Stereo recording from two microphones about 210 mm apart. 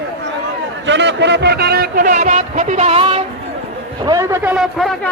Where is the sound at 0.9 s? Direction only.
55° right (ahead or behind); by 3.2 s 30° right (ahead or behind).